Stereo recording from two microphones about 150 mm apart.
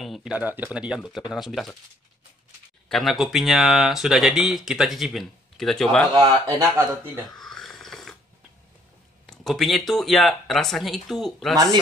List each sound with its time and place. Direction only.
0.0 s speech: centre (ahead or behind)
2.9 s speech: centre (ahead or behind)
6.1 s speech: 25° right (ahead or behind)
7.3 s snoring: centre (ahead or behind)
9.2 s speech: centre (ahead or behind)
11.5 s speech: 25° right (ahead or behind)